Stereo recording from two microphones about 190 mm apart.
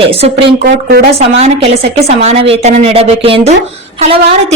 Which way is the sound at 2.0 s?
35° right (ahead or behind).